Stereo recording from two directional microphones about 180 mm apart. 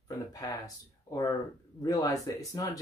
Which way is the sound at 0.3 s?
20° left (ahead or behind).